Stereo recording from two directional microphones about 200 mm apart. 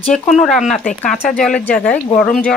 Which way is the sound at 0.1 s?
Centre (ahead or behind).